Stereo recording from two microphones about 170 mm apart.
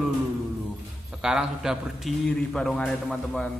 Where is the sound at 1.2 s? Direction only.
5° right (ahead or behind).